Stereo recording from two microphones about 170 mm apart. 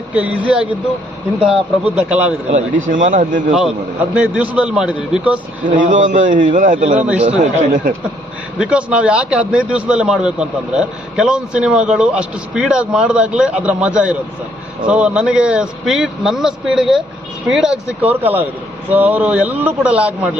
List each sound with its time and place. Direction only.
0.1 s a man's voice: 10° right (ahead or behind)
2.6 s a man's voice: 50° right (ahead or behind)
4.1 s a man's voice: 5° right (ahead or behind)
5.6 s a man's voice: 50° right (ahead or behind)
6.9 s a man's voice: 5° right (ahead or behind)
7.2 s a man's voice: 45° right (ahead or behind)
8.5 s a man's voice: 5° right (ahead or behind)